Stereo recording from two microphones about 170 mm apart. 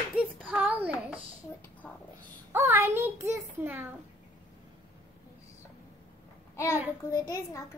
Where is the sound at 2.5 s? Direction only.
15° right (ahead or behind).